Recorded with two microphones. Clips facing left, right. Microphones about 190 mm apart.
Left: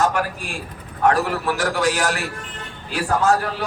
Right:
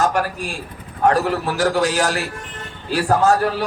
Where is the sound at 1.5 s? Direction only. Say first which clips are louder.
Right 2 dB; 30° right (ahead or behind).